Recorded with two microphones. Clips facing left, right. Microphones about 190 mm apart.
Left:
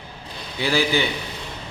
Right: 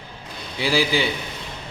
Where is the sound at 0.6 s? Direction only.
30° right (ahead or behind).